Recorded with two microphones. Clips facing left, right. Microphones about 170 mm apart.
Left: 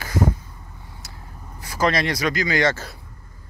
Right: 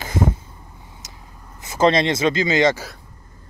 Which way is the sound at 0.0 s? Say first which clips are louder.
Right 1 dB; 25° right (ahead or behind).